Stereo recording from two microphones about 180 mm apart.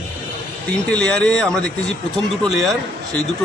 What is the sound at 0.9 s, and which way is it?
Speech, 5° left (ahead or behind).